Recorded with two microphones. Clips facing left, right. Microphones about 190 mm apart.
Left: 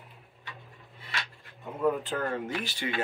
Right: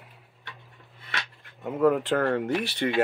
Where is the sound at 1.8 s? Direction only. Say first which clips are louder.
Right 6 dB; 80° right.